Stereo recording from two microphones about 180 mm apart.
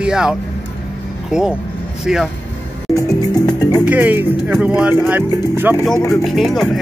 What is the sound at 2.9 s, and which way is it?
Music, 20° left (ahead or behind).